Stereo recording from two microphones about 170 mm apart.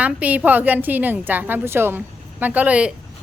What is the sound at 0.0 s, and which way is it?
A woman's voice, 10° right (ahead or behind).